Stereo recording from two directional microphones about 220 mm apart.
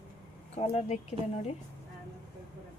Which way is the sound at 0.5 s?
30° left (ahead or behind).